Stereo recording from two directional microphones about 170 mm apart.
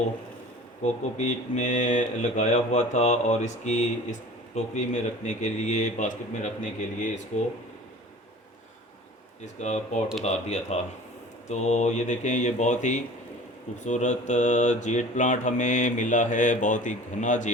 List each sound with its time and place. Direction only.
0.8 s speech: 45° left (ahead or behind)
9.6 s speech: 40° left (ahead or behind)